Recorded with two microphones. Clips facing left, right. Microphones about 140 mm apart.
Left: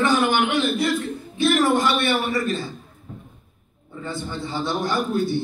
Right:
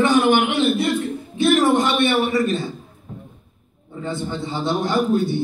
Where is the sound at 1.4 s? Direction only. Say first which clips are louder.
Right 3 dB; 20° right (ahead or behind).